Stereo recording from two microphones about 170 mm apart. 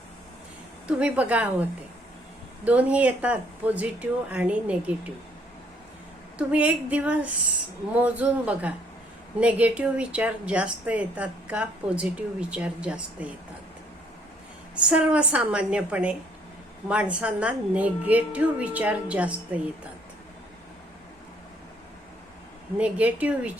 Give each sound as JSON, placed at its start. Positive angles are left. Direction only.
{"t": 0.9, "sound": "a woman's voice", "side_deg": -5}
{"t": 2.6, "sound": "a woman's voice", "side_deg": -10}
{"t": 6.5, "sound": "a woman's voice", "side_deg": -10}
{"t": 14.8, "sound": "a woman's voice", "side_deg": -5}
{"t": 22.8, "sound": "a woman's voice", "side_deg": -10}